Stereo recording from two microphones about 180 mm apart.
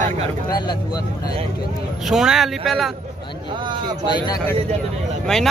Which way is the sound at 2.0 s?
Centre (ahead or behind).